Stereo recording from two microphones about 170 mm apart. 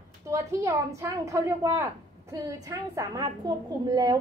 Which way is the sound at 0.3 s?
15° right (ahead or behind).